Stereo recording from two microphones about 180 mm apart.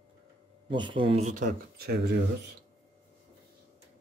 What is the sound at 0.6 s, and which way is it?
Speech, 25° right (ahead or behind).